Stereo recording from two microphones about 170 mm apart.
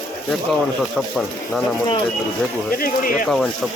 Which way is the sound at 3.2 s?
Centre (ahead or behind).